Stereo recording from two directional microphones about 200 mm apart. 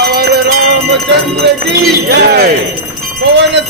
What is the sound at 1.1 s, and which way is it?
Music, 60° right (ahead or behind).